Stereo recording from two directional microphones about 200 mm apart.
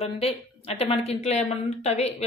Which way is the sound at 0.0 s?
30° left (ahead or behind).